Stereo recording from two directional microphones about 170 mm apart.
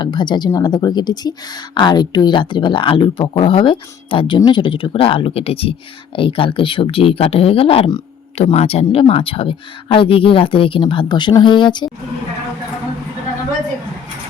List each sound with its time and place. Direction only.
0.0 s speech: 25° left (ahead or behind)